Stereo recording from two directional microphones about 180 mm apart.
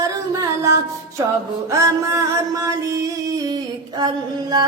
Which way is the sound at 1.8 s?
15° right (ahead or behind).